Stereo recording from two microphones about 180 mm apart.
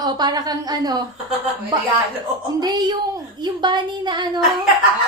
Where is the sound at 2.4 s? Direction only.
20° right (ahead or behind).